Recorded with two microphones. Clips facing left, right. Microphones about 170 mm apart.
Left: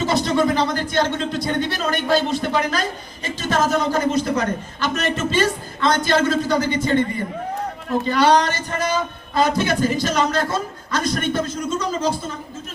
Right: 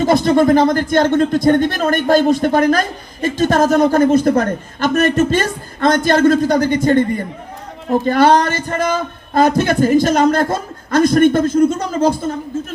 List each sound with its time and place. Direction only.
0.0 s speech: 50° right (ahead or behind)
8.0 s speech: 50° right (ahead or behind)